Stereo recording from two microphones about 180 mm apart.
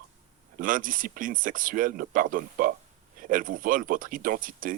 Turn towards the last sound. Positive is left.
turn(degrees=-50)  # may be behind; listen again after turning